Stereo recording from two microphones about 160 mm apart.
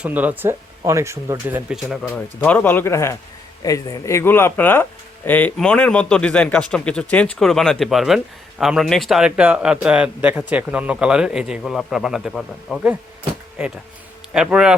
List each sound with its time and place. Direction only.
0.0 s speech: 10° right (ahead or behind)
2.0 s speech: 10° left (ahead or behind)